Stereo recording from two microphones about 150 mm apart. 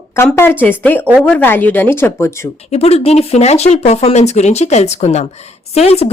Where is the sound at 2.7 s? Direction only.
45° left (ahead or behind).